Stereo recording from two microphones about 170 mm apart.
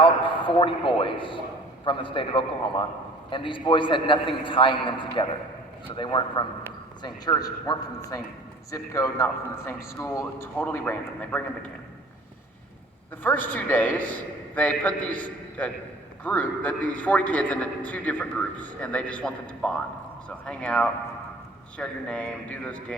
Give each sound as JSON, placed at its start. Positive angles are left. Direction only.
{"t": 0.0, "sound": "a man's voice", "side_deg": 30}
{"t": 13.2, "sound": "a man's voice", "side_deg": 10}